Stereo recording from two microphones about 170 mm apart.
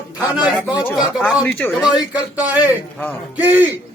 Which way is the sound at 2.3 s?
10° right (ahead or behind).